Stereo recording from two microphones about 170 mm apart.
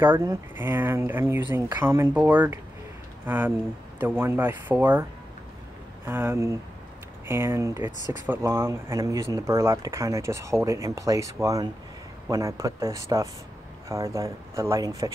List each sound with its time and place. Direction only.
0.0 s speech: 15° right (ahead or behind)
6.0 s speech: 15° right (ahead or behind)